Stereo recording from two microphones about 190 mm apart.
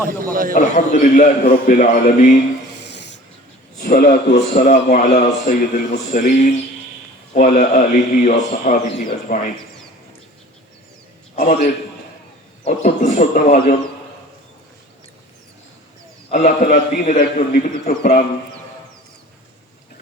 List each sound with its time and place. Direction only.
0.5 s a man's voice: 40° left (ahead or behind)
2.8 s snake: 65° left (ahead or behind)
3.8 s a man's voice: 50° left (ahead or behind)
4.6 s a man's voice: 45° left (ahead or behind)
11.3 s a man's voice: 45° left (ahead or behind)
16.3 s a man's voice: 40° left (ahead or behind)